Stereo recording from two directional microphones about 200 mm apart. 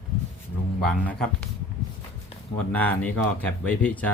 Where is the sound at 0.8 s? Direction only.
5° left (ahead or behind).